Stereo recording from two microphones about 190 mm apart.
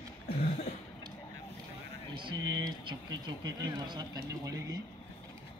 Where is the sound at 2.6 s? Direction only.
20° right (ahead or behind).